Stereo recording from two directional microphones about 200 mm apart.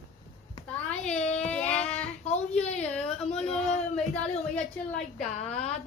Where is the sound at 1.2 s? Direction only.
35° left (ahead or behind).